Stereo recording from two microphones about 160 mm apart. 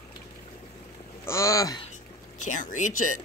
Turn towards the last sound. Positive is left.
turn(degrees=50)  # may be behind; listen again after turning